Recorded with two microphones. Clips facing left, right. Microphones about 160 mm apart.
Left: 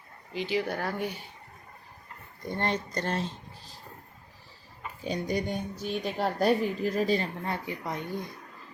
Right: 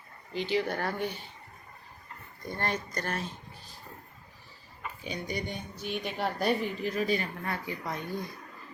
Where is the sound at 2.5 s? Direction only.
20° left (ahead or behind).